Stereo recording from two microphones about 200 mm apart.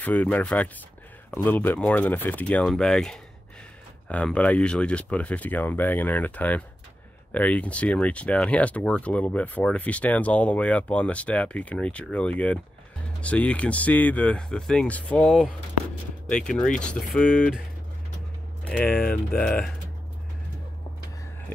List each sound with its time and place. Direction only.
0.0 s speech: 10° left (ahead or behind)
18.7 s speech: 5° left (ahead or behind)